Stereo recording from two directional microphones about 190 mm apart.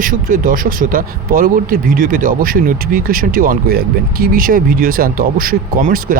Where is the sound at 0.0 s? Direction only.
45° right (ahead or behind).